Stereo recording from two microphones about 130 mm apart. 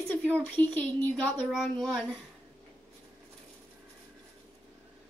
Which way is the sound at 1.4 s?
Centre (ahead or behind).